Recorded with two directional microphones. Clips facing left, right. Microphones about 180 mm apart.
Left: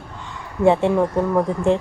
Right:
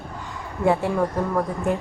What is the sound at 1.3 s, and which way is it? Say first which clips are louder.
Speech: left 6 dB; 25° left (ahead or behind).